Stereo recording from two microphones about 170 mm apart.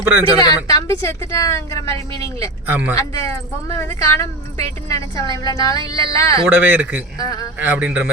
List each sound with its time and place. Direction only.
0.4 s speech: 20° left (ahead or behind)
2.6 s a man's voice: 10° right (ahead or behind)
2.9 s speech: 20° left (ahead or behind)
5.4 s a sound: 20° left (ahead or behind)
6.4 s a man's voice: 10° right (ahead or behind)
7.2 s a sound: 20° left (ahead or behind)
7.6 s a man's voice: 10° right (ahead or behind)